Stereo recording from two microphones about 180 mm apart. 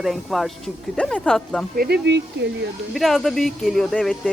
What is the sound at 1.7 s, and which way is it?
Speech, 60° right (ahead or behind).